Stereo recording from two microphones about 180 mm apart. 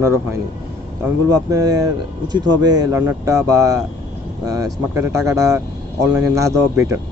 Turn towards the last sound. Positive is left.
turn(degrees=-15)  # may be behind; listen again after turning